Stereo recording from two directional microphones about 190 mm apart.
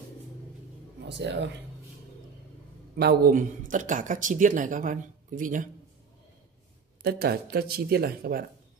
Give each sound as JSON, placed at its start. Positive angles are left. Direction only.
{"t": 1.0, "sound": "speech", "side_deg": -65}
{"t": 3.0, "sound": "speech", "side_deg": -55}
{"t": 3.7, "sound": "speech", "side_deg": -45}
{"t": 7.0, "sound": "speech", "side_deg": -55}